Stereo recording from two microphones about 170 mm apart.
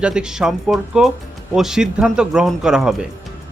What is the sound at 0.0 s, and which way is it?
Speech, 5° right (ahead or behind).